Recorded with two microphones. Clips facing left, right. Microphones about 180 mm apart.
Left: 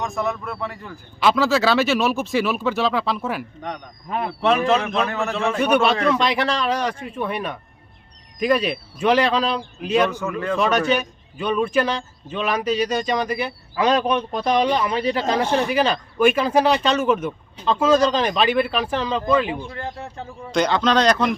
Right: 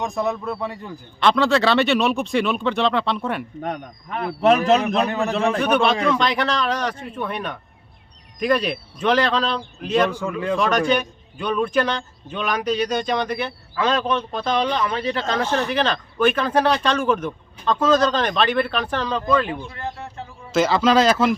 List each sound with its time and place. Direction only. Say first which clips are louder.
0.0 s a man's voice: right 2 dB; 15° right (ahead or behind)
1.2 s speech: even; 5° left (ahead or behind)
4.4 s a man's voice: right 3 dB; 40° right (ahead or behind)
5.0 s a man's voice: right 2 dB; 15° right (ahead or behind)
5.5 s a man's voice: left 4 dB; 5° left (ahead or behind)
10.1 s a man's voice: right 1 dB; 10° right (ahead or behind)
10.6 s a man's voice: left 1 dB; 5° left (ahead or behind)
20.5 s speech: right 2 dB; 5° right (ahead or behind)